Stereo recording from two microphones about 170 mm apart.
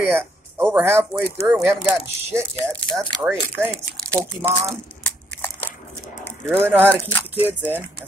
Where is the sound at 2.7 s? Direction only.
5° left (ahead or behind).